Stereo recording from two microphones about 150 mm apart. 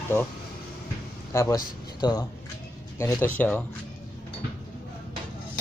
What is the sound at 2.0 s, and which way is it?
Speech, 30° left (ahead or behind).